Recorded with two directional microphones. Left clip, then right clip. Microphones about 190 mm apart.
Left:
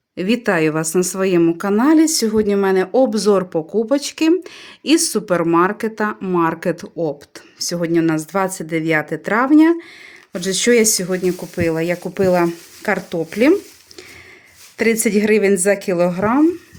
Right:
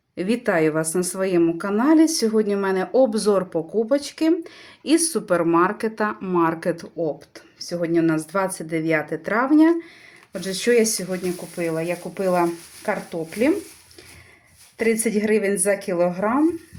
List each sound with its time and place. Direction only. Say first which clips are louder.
0.2 s a woman's voice: left 3 dB; 30° left (ahead or behind)
14.8 s a woman's voice: left 5 dB; 40° left (ahead or behind)